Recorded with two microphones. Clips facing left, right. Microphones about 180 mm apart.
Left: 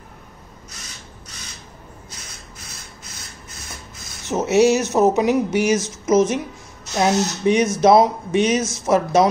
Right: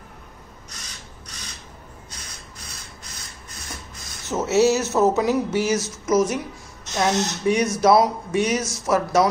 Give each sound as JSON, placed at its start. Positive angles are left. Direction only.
{"t": 4.3, "sound": "speech", "side_deg": 20}